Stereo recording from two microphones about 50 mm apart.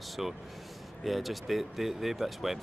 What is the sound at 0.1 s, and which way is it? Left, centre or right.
Speech, centre.